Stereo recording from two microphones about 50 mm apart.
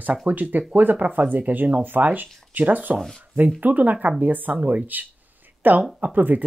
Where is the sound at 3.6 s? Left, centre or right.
Right.